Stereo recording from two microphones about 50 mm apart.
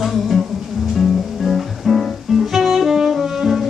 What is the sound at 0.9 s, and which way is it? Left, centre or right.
Music, centre.